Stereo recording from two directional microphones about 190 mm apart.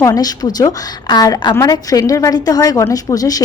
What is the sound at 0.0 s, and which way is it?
A woman's voice, 20° left (ahead or behind).